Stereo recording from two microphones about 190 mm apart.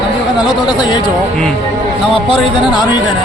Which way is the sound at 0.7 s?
25° left (ahead or behind).